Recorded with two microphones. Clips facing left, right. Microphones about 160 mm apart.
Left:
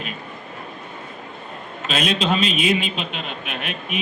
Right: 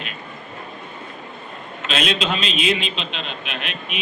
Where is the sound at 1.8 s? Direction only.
40° left (ahead or behind).